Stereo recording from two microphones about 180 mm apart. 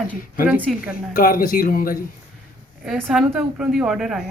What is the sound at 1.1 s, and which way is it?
Speech, 55° left (ahead or behind).